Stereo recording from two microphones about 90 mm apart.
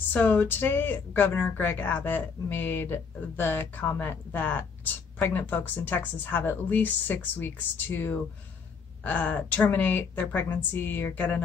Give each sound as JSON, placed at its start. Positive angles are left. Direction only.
{"t": 0.1, "sound": "speech", "side_deg": 20}